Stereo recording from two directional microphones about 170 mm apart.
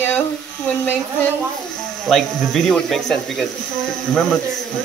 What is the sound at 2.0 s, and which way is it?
Speech, centre (ahead or behind).